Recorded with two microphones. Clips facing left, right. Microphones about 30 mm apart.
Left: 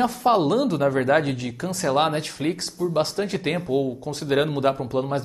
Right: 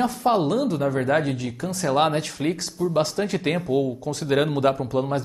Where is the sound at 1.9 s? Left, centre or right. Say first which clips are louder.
Right 1 dB; centre.